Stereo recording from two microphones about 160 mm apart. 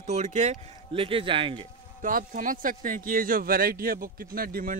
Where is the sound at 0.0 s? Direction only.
45° right (ahead or behind).